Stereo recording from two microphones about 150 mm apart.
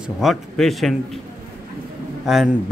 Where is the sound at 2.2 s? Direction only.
5° right (ahead or behind).